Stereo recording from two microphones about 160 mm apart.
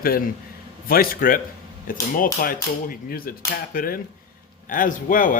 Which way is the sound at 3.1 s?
65° left (ahead or behind).